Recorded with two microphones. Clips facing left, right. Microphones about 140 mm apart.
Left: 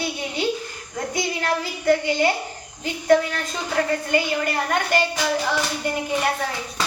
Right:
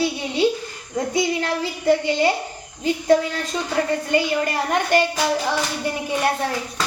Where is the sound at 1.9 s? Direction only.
25° right (ahead or behind).